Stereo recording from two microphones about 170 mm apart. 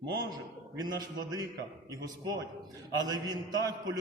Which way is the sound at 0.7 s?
25° right (ahead or behind).